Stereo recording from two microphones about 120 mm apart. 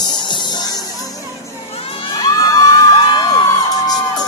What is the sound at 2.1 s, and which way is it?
Crowd, 40° left (ahead or behind).